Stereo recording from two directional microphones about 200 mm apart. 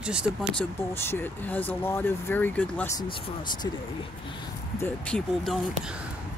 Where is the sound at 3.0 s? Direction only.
20° left (ahead or behind).